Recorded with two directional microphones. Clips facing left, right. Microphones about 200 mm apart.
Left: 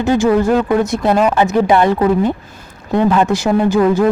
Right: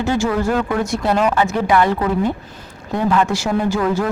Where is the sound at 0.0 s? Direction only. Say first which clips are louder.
Left 6 dB; 15° left (ahead or behind).